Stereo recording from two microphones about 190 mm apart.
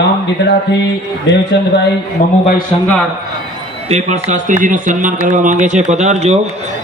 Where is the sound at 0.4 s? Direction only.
65° left (ahead or behind).